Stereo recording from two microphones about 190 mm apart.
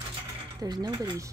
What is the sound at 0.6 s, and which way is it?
Speech, 20° right (ahead or behind).